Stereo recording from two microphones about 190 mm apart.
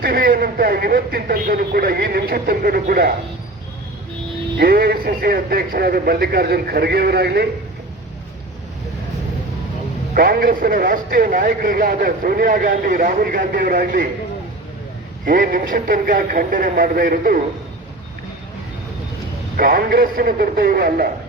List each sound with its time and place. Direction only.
0.0 s a man's voice: 50° right (ahead or behind)
4.5 s a man's voice: 50° right (ahead or behind)
10.2 s a man's voice: 55° right (ahead or behind)
15.2 s a man's voice: 45° right (ahead or behind)
19.5 s a man's voice: 50° right (ahead or behind)